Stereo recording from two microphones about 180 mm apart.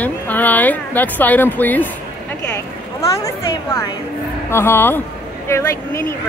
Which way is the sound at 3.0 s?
20° left (ahead or behind).